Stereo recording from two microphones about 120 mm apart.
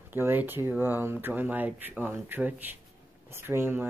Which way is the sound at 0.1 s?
15° right (ahead or behind).